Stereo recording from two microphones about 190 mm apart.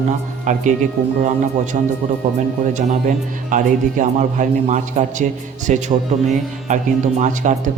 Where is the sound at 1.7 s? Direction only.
35° right (ahead or behind).